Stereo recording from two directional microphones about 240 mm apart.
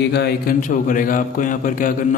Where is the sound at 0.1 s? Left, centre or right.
Left.